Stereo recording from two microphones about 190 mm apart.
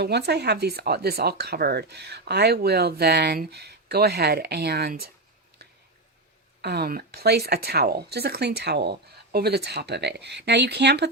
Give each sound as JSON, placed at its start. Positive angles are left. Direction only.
{"t": 0.0, "sound": "speech", "side_deg": -60}
{"t": 6.6, "sound": "speech", "side_deg": -55}